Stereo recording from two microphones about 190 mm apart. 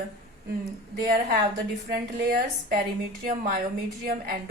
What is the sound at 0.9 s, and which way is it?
A woman's voice, 55° right (ahead or behind).